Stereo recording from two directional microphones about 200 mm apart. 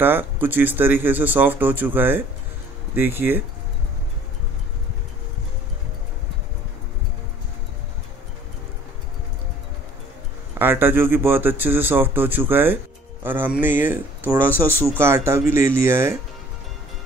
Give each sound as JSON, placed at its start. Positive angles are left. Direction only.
{"t": 0.0, "sound": "speech", "side_deg": -10}
{"t": 10.6, "sound": "speech", "side_deg": -10}